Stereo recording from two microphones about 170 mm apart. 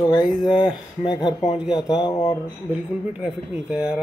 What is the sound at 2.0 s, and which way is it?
Speech, 25° left (ahead or behind).